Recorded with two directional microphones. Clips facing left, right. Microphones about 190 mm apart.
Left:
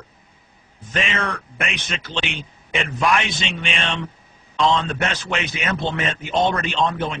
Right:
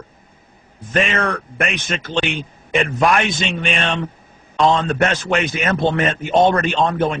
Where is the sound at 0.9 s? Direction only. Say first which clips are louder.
Right 6 dB; 50° right (ahead or behind).